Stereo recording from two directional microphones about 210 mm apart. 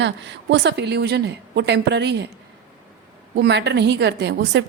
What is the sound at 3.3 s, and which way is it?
A woman's voice, 55° right (ahead or behind).